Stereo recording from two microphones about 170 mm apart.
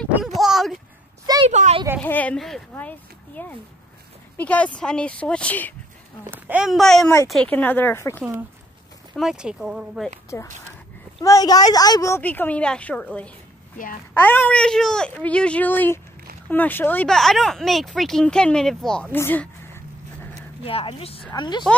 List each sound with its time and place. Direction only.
0.4 s a sound: centre (ahead or behind)
1.5 s speech: 40° right (ahead or behind)
2.0 s a woman's voice: 10° left (ahead or behind)
6.3 s a woman's voice: 10° right (ahead or behind); by 8.2 s 15° left (ahead or behind)
9.1 s speech: 5° right (ahead or behind)
10.3 s a woman's voice: 15° left (ahead or behind)
20.6 s a woman's voice: 35° left (ahead or behind)